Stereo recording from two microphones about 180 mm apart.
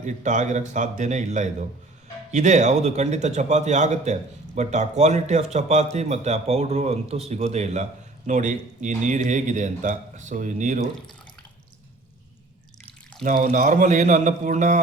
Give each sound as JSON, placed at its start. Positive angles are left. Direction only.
{"t": 0.0, "sound": "a man's voice", "side_deg": -40}
{"t": 13.2, "sound": "a man's voice", "side_deg": -45}